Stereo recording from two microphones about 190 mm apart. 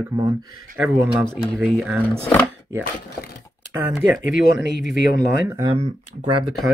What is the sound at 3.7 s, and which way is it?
Speech, 10° right (ahead or behind).